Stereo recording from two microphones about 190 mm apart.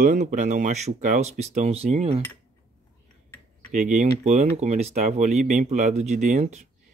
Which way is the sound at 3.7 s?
40° right (ahead or behind).